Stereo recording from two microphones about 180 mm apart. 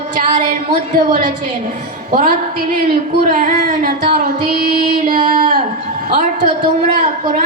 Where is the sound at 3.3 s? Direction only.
50° right (ahead or behind).